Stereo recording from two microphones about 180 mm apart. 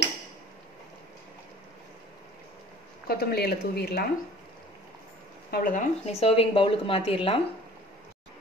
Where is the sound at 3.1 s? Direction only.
60° left (ahead or behind).